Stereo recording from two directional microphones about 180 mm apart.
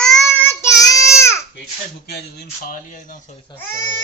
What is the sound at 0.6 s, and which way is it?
Child singing, 15° left (ahead or behind).